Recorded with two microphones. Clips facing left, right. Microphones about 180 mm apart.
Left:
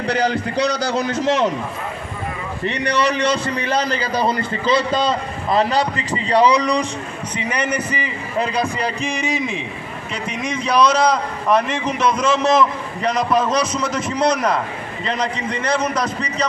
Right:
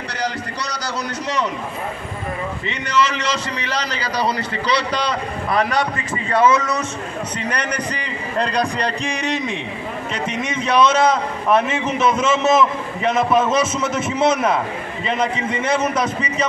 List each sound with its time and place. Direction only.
0.1 s a man's voice: 55° left (ahead or behind)
1.1 s a man's voice: 90° left
2.6 s a man's voice: 65° left (ahead or behind); by 5.0 s 45° left (ahead or behind)
5.5 s a man's voice: 25° left (ahead or behind); by 16.4 s 5° right (ahead or behind)